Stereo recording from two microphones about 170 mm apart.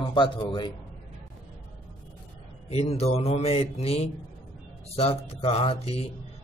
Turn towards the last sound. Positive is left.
turn(degrees=35)  # may be behind; listen again after turning